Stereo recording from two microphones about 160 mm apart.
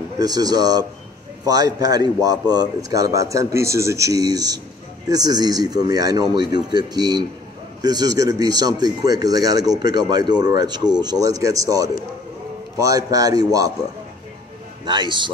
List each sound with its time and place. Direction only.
0.2 s speech: 25° right (ahead or behind)
14.9 s speech: 30° right (ahead or behind)